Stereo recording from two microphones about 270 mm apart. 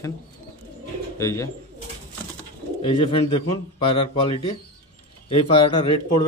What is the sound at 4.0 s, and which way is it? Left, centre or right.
Speech, left.